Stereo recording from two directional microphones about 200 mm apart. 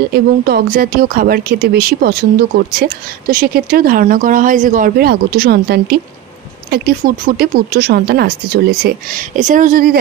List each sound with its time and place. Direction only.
0.1 s speech: 50° right (ahead or behind)